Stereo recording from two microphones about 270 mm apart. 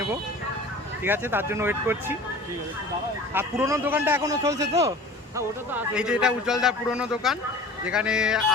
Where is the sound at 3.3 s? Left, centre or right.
Centre.